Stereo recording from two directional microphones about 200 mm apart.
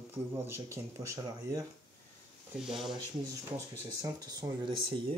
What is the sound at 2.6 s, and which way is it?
Speech, centre (ahead or behind).